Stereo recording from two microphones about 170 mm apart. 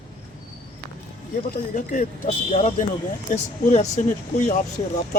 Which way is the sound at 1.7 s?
50° left (ahead or behind).